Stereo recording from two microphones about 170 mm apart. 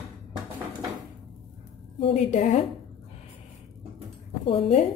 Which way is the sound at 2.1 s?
45° left (ahead or behind).